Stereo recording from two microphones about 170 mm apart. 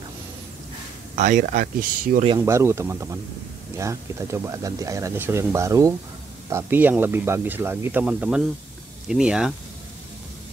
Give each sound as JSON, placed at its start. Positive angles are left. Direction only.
{"t": 1.1, "sound": "speech", "side_deg": -45}
{"t": 2.2, "sound": "speech", "side_deg": -20}